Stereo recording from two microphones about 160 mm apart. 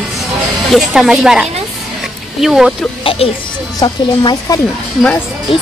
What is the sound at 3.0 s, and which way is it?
Speech, 35° left (ahead or behind).